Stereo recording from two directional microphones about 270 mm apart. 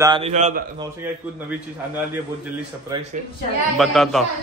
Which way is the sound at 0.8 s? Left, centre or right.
Centre.